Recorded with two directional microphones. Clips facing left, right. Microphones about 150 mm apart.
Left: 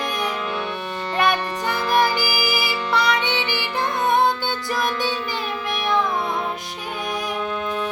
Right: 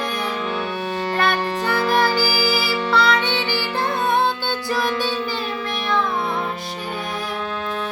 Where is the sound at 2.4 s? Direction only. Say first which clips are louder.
Right 3 dB; 20° left (ahead or behind).